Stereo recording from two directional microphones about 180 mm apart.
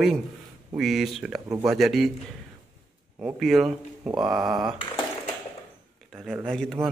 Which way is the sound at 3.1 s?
5° right (ahead or behind).